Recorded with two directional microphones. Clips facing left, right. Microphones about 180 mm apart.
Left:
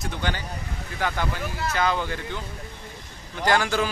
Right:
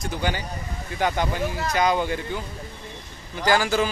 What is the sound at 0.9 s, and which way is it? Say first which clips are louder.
A man's voice: right 4 dB; 20° right (ahead or behind).